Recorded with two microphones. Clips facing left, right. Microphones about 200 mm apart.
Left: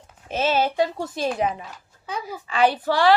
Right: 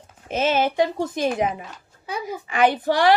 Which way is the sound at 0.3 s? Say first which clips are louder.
Right 1 dB; 15° right (ahead or behind).